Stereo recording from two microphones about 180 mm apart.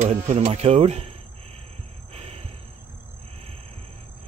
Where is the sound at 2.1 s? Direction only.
35° right (ahead or behind).